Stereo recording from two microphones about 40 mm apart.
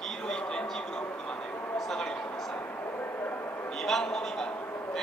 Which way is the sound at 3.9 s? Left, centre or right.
Centre.